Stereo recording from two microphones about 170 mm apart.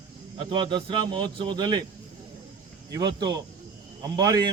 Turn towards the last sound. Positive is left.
turn(degrees=-20)  # may be behind; listen again after turning